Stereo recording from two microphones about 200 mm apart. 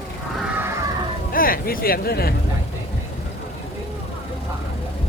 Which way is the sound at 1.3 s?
45° left (ahead or behind).